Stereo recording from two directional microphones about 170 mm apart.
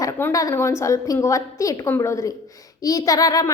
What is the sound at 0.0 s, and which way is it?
A woman's voice, 15° left (ahead or behind).